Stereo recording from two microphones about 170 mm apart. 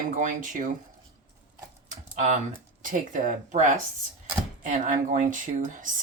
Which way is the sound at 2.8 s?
50° right (ahead or behind).